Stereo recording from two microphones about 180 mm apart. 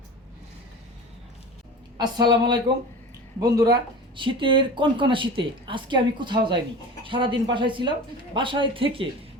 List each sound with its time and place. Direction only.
2.0 s speech: 25° right (ahead or behind)